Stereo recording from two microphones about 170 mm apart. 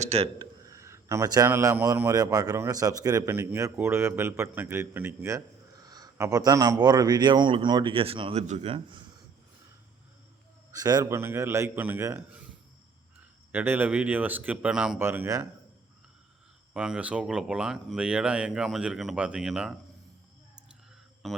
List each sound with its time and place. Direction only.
0.0 s a man's voice: 35° right (ahead or behind)
0.6 s a man's voice: 20° right (ahead or behind)
10.7 s speech: 20° right (ahead or behind)
13.5 s speech: 10° right (ahead or behind)
16.7 s speech: 5° right (ahead or behind)
21.2 s speech: centre (ahead or behind)